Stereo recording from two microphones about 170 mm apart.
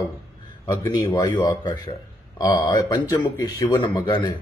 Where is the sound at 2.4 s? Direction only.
20° left (ahead or behind).